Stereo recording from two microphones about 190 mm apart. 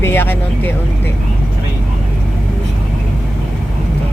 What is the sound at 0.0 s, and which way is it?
Speech, 10° left (ahead or behind).